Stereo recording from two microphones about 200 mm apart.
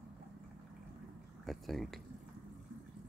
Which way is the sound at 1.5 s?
Centre (ahead or behind).